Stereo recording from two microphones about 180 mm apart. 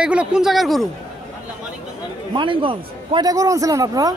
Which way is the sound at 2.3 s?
30° right (ahead or behind).